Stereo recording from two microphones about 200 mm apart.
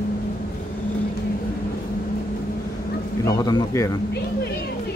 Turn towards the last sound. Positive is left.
turn(degrees=20)  # may be behind; listen again after turning